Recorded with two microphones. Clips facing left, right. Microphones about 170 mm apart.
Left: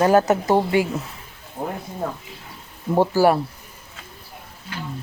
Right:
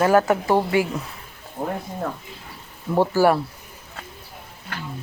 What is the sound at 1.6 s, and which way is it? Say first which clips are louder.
Speech: right 1 dB; 5° left (ahead or behind).